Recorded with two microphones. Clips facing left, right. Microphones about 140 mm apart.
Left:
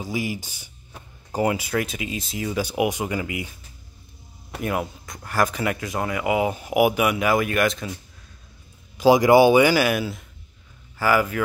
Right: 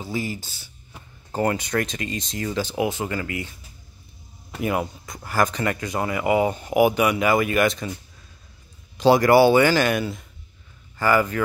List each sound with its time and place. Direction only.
0.0 s speech: 10° left (ahead or behind)
4.5 s speech: centre (ahead or behind)
8.9 s speech: 10° left (ahead or behind)